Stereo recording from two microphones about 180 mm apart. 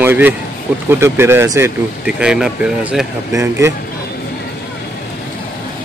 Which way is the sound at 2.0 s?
5° right (ahead or behind).